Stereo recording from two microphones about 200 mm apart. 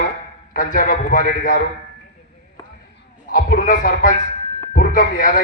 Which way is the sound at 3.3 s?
45° left (ahead or behind).